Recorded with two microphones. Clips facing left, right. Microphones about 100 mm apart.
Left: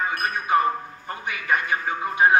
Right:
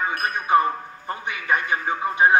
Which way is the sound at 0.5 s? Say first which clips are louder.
Right 2 dB; 25° right (ahead or behind).